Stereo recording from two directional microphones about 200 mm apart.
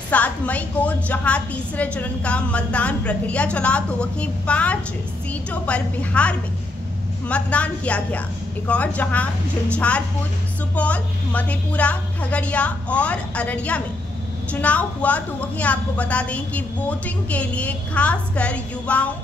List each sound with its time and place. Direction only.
0.1 s a woman's voice: 5° left (ahead or behind)